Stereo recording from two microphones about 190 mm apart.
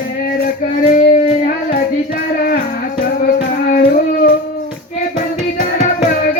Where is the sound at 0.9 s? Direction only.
40° left (ahead or behind).